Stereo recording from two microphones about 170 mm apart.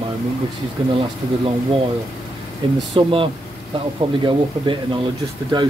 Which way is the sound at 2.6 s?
30° right (ahead or behind).